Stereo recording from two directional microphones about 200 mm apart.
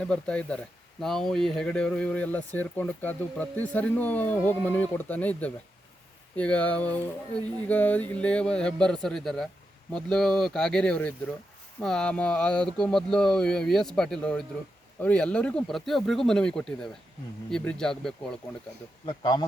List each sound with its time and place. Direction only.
0.0 s speech: 5° left (ahead or behind)
19.0 s speech: 20° left (ahead or behind)